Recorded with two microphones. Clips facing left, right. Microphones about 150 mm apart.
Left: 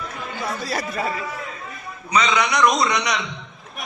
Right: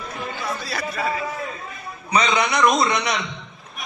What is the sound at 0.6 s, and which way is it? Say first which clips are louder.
Speech: left 2 dB; 40° left (ahead or behind).